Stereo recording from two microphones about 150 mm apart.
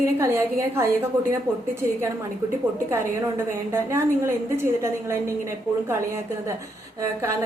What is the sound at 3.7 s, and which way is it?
A woman's voice, 15° right (ahead or behind).